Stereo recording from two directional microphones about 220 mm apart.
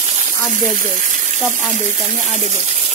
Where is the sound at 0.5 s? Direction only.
35° right (ahead or behind).